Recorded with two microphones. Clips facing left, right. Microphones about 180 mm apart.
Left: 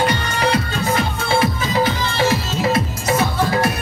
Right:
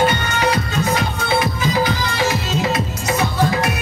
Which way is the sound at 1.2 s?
30° left (ahead or behind).